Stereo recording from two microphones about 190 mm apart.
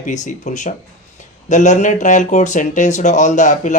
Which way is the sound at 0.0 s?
40° left (ahead or behind).